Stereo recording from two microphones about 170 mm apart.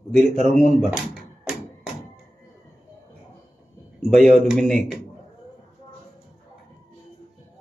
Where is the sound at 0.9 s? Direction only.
5° right (ahead or behind).